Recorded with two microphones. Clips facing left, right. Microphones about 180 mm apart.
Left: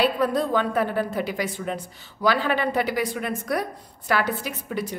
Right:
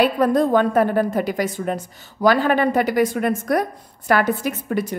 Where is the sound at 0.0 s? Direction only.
50° right (ahead or behind).